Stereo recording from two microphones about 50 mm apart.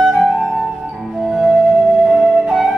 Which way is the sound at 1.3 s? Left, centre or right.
Centre.